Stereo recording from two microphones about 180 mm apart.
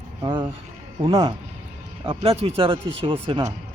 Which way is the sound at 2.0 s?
35° right (ahead or behind).